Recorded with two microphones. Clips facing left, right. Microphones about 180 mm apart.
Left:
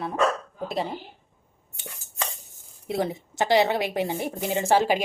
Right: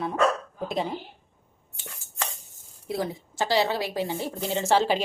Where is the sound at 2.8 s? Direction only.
25° left (ahead or behind).